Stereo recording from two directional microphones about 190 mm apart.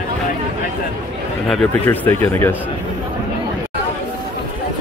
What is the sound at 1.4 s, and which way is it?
Speech, 10° left (ahead or behind).